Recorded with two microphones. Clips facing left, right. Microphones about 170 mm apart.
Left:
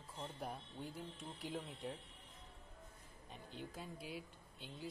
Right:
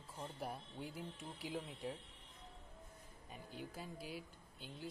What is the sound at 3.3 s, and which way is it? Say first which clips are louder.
Speech: right 1 dB; 5° right (ahead or behind).